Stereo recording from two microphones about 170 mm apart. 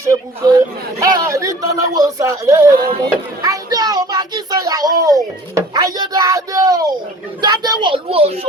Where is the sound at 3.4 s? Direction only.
20° right (ahead or behind).